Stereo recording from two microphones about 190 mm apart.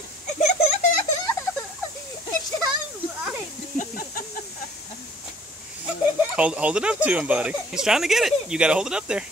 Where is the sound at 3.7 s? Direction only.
50° left (ahead or behind).